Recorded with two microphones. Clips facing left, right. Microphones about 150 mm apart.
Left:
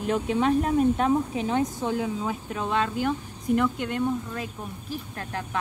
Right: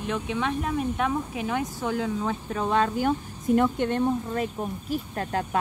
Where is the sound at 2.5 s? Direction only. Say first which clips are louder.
Right 3 dB; centre (ahead or behind).